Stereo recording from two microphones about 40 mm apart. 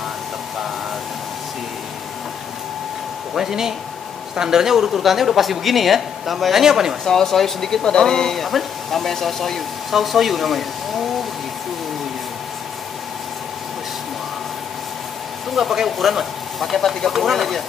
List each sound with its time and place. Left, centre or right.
3.3 s speech: centre
7.1 s speech: centre
15.5 s speech: centre
16.7 s speech: centre